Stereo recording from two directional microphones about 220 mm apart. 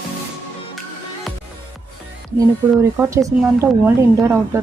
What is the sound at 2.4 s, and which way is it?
A woman's voice, 10° right (ahead or behind).